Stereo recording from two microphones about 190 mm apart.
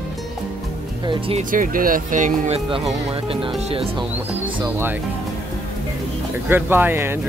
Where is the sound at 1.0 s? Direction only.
30° right (ahead or behind).